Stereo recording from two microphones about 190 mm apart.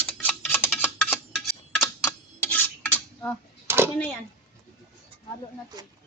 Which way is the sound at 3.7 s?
10° right (ahead or behind).